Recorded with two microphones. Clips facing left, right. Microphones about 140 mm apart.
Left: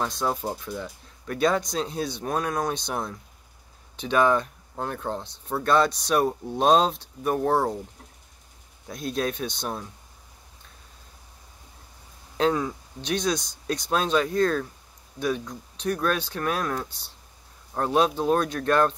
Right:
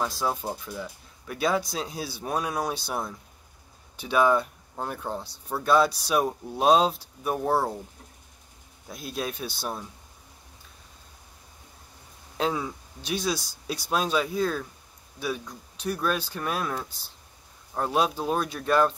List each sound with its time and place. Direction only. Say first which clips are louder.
0.0 s speech: left 1 dB; 5° right (ahead or behind)
8.8 s speech: left 5 dB; 5° right (ahead or behind)
12.4 s speech: left 4 dB; 5° right (ahead or behind)